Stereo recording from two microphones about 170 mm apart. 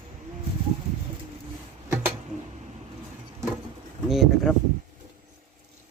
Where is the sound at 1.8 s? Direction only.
15° right (ahead or behind).